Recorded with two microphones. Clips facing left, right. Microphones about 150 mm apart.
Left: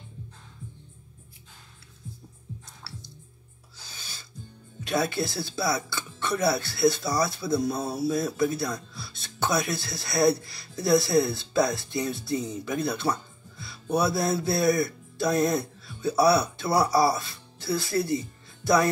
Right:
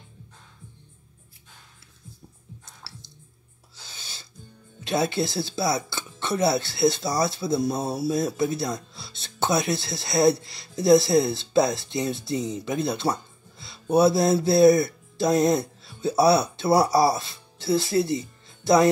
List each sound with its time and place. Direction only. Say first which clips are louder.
4.8 s speech: right 2 dB; 25° right (ahead or behind)